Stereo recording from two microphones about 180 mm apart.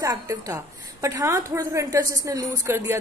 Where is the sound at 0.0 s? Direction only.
15° right (ahead or behind).